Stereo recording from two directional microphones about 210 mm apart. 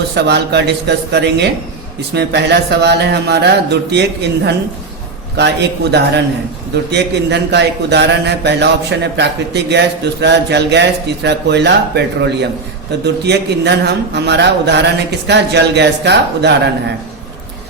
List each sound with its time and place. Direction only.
0.3 s speech: 55° right (ahead or behind)